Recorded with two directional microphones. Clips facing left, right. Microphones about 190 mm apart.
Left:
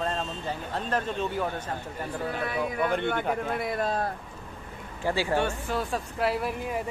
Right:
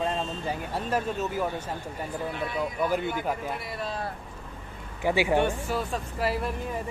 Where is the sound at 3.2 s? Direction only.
5° right (ahead or behind).